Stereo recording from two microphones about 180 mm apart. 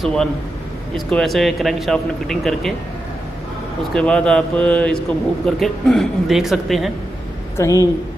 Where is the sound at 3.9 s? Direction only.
5° left (ahead or behind).